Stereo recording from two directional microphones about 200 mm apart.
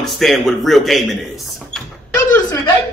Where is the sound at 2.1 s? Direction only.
5° left (ahead or behind).